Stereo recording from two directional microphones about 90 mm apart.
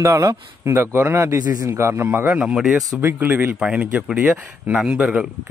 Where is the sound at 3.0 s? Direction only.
25° right (ahead or behind).